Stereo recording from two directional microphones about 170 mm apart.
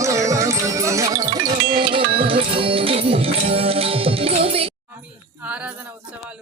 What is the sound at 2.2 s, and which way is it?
Music, 30° right (ahead or behind).